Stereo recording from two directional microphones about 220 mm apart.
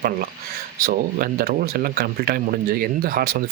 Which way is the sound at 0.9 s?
40° right (ahead or behind).